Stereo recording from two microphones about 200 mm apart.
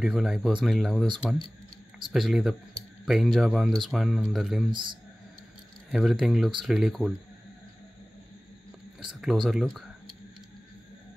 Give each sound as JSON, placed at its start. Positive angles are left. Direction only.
{"t": 0.0, "sound": "speech", "side_deg": 0}
{"t": 2.1, "sound": "speech", "side_deg": 0}
{"t": 4.6, "sound": "speech", "side_deg": -25}
{"t": 5.9, "sound": "speech", "side_deg": 0}
{"t": 9.0, "sound": "speech", "side_deg": -5}